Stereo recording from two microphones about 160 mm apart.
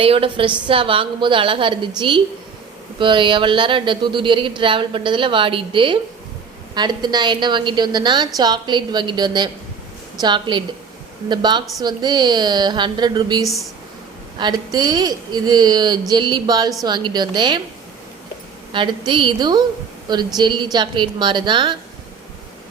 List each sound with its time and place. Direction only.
0.0 s speech: 35° right (ahead or behind)
18.7 s speech: 30° right (ahead or behind)